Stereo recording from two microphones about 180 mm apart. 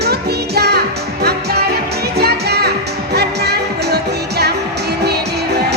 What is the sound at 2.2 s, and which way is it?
Music, 65° right (ahead or behind).